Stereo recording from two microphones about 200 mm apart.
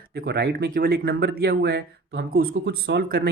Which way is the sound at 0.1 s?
50° right (ahead or behind).